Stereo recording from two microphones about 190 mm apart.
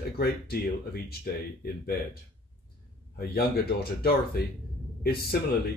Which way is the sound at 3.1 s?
55° left (ahead or behind).